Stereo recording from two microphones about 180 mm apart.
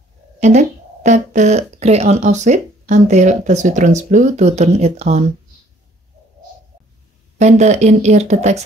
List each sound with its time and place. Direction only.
0.4 s speech: 40° right (ahead or behind)
7.3 s speech: 40° right (ahead or behind)